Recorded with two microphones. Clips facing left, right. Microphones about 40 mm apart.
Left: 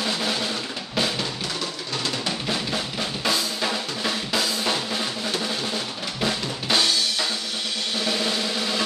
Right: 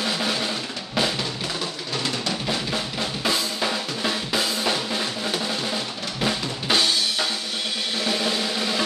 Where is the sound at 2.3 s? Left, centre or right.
Centre.